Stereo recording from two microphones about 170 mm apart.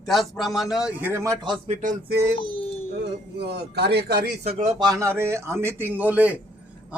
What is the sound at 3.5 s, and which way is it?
Speech, 75° right (ahead or behind).